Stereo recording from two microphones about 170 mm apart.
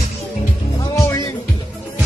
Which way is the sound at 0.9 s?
15° left (ahead or behind).